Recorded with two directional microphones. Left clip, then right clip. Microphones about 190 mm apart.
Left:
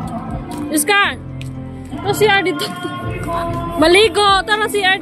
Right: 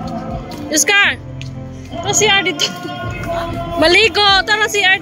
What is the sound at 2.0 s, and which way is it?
Speech, 25° left (ahead or behind).